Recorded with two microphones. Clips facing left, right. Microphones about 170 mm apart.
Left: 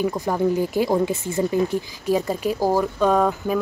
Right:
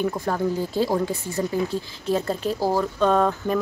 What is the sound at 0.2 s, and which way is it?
Speech, 15° left (ahead or behind).